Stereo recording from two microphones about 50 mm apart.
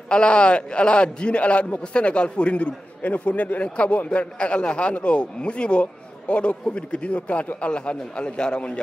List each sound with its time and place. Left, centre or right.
0.1 s a man's voice: centre